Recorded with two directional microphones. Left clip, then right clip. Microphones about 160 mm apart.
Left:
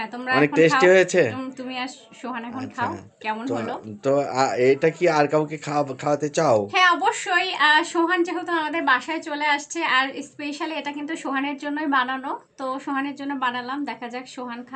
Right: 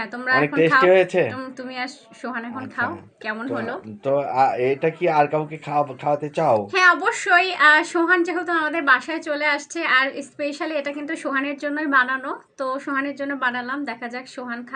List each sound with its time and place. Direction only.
0.0 s speech: 15° left (ahead or behind)
0.4 s speech: 30° left (ahead or behind)
2.6 s speech: 20° left (ahead or behind)
6.7 s speech: 15° left (ahead or behind)